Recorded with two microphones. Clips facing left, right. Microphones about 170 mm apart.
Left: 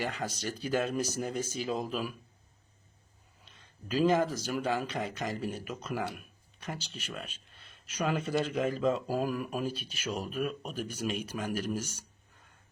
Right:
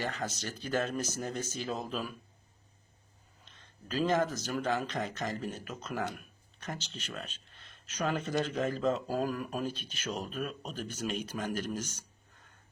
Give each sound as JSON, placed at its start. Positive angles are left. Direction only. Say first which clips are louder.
{"t": 0.0, "sound": "speech", "louder": "left 2 dB", "side_deg": 10}
{"t": 3.4, "sound": "speech", "louder": "left 2 dB", "side_deg": 10}